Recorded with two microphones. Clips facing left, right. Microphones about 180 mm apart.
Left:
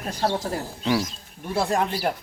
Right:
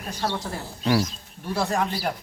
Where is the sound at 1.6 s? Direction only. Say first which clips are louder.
Left 2 dB; 30° left (ahead or behind).